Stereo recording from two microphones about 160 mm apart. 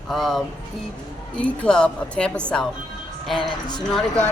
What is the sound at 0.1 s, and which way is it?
A woman's voice, centre (ahead or behind).